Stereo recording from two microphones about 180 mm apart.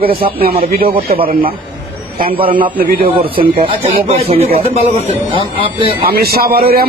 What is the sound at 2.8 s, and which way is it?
Speech, 55° right (ahead or behind).